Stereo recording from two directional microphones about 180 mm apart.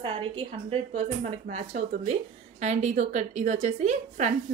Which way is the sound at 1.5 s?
65° right (ahead or behind).